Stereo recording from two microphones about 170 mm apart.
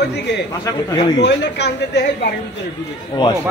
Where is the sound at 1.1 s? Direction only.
90° left.